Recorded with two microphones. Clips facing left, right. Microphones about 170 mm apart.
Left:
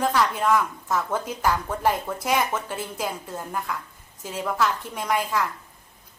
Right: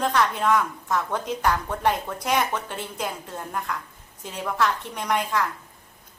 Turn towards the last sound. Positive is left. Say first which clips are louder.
# even
turn(degrees=5)  # may be behind; listen again after turning